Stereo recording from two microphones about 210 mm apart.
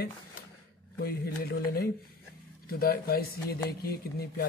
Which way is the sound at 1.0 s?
45° left (ahead or behind).